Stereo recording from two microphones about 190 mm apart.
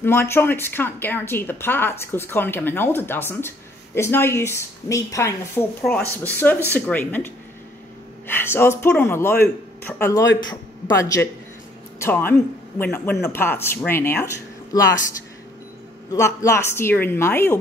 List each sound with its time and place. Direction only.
0.0 s a woman's voice: 10° left (ahead or behind)
16.1 s a woman's voice: 15° left (ahead or behind)